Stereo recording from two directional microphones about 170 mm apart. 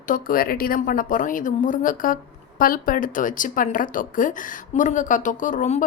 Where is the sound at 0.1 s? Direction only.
55° left (ahead or behind).